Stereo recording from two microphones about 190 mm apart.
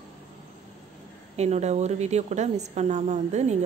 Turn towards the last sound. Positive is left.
turn(degrees=-35)  # may be behind; listen again after turning